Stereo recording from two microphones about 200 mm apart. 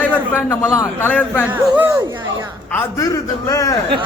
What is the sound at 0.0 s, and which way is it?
A man's voice, 10° left (ahead or behind).